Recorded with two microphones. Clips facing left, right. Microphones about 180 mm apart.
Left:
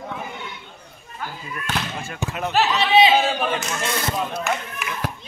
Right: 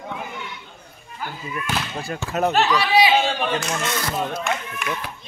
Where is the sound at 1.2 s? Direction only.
5° right (ahead or behind).